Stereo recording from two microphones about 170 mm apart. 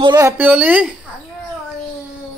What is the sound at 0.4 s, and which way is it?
Speech, 10° right (ahead or behind).